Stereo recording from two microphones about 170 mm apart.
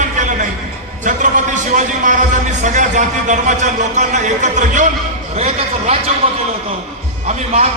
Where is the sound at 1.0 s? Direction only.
45° right (ahead or behind).